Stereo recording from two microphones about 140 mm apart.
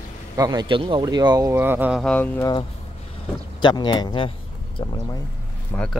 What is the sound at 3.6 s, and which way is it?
Speech, 30° left (ahead or behind).